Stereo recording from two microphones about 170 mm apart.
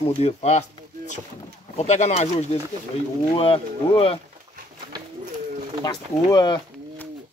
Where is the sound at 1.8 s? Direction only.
40° left (ahead or behind).